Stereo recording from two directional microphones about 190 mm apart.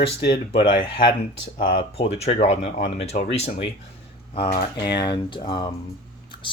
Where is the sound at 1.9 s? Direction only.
35° left (ahead or behind).